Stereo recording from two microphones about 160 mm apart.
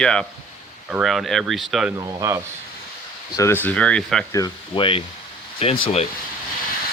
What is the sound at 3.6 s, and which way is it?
Speech, 5° left (ahead or behind).